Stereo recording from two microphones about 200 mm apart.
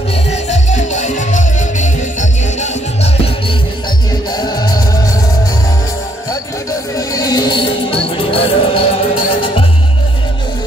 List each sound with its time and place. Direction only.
0.3 s music: 35° left (ahead or behind)
4.3 s music: 20° left (ahead or behind)
7.0 s music: 20° left (ahead or behind)